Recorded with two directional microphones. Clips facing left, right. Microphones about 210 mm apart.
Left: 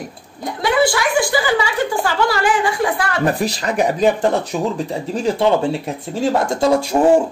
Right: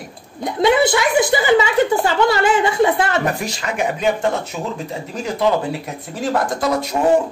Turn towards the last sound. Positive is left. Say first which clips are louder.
# left 4 dB
turn(degrees=30)  # may be behind; listen again after turning